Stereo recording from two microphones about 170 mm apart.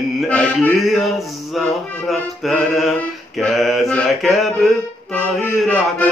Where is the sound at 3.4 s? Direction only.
Centre (ahead or behind).